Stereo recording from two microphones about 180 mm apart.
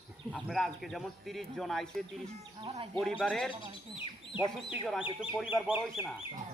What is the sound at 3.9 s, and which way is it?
Speech, 25° left (ahead or behind).